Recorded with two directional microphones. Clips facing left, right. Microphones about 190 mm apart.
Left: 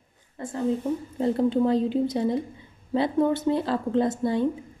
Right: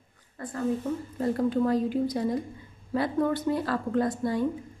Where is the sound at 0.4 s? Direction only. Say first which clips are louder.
Left 3 dB; 25° left (ahead or behind).